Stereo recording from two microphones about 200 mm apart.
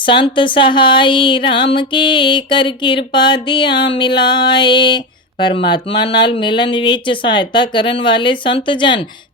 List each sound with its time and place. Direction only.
0.0 s speech: 25° left (ahead or behind)